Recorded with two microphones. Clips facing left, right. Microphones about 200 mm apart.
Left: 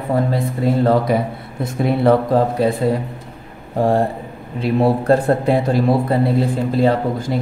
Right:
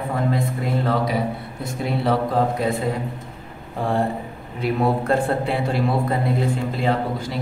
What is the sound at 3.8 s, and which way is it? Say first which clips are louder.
Speech: left 6 dB; 40° left (ahead or behind).